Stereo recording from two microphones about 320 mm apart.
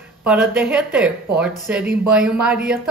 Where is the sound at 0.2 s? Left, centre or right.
Centre.